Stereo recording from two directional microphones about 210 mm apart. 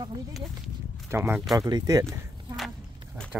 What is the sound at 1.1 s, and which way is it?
Speech, 10° right (ahead or behind).